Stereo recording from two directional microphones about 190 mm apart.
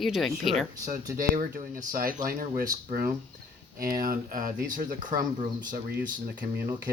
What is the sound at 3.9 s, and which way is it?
Speech, 50° right (ahead or behind).